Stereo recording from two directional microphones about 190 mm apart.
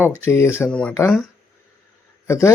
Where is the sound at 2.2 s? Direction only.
15° left (ahead or behind).